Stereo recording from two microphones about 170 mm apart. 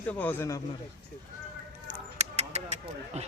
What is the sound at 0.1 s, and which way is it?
Speech, 10° left (ahead or behind).